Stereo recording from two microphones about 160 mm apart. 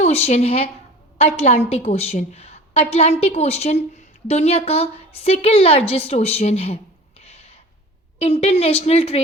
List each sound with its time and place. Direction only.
0.0 s a woman's voice: 40° left (ahead or behind)
7.3 s a sound: 40° left (ahead or behind)
8.2 s a woman's voice: 40° left (ahead or behind)